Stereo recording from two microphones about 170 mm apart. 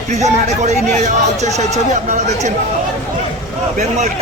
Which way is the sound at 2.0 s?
45° right (ahead or behind).